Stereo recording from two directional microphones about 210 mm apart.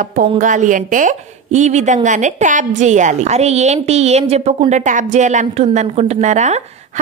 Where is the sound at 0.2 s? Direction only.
40° right (ahead or behind).